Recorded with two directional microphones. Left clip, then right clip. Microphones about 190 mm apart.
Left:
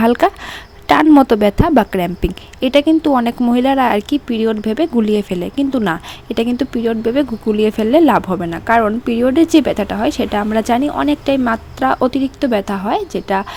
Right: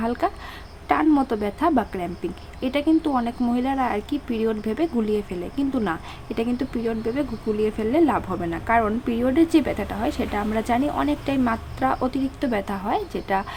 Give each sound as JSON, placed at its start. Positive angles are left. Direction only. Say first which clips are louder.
{"t": 0.0, "sound": "a woman's voice", "louder": "left 12 dB", "side_deg": 45}